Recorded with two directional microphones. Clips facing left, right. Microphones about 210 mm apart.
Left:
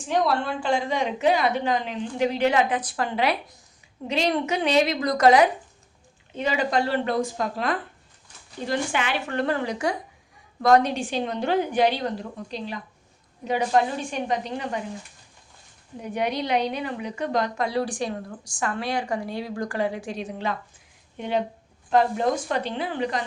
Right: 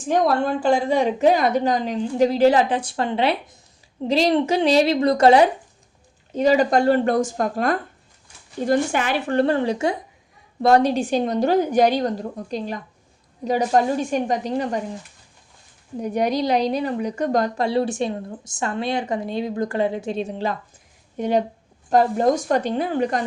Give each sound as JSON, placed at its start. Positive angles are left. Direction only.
{"t": 0.1, "sound": "a woman's voice", "side_deg": -45}
{"t": 6.3, "sound": "a woman's voice", "side_deg": -40}
{"t": 16.0, "sound": "a woman's voice", "side_deg": -40}
{"t": 17.7, "sound": "speech", "side_deg": -25}
{"t": 21.2, "sound": "a woman's voice", "side_deg": -40}